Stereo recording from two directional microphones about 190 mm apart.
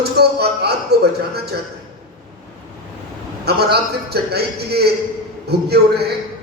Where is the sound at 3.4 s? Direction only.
60° right (ahead or behind).